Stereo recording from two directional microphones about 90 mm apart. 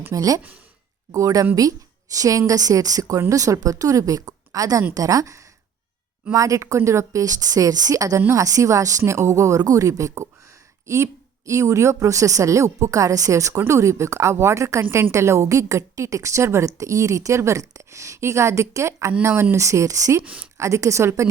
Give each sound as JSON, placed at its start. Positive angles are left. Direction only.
{"t": 0.1, "sound": "a woman's voice", "side_deg": -40}
{"t": 20.2, "sound": "a woman's voice", "side_deg": -15}
{"t": 20.6, "sound": "a woman's voice", "side_deg": -35}